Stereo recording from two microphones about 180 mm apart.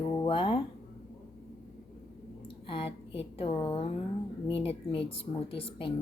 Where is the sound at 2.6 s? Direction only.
30° left (ahead or behind).